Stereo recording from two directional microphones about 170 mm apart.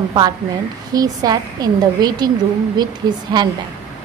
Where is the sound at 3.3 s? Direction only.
25° right (ahead or behind).